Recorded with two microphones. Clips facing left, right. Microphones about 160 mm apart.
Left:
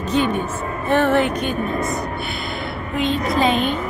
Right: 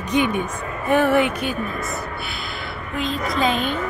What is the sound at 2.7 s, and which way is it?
Music, centre (ahead or behind).